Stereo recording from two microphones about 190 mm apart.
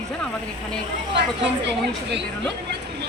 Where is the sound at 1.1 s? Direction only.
65° right (ahead or behind).